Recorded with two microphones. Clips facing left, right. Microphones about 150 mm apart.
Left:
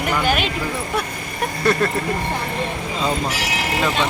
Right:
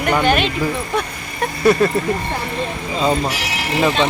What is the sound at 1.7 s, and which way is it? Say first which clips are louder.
Speech: right 5 dB; centre (ahead or behind).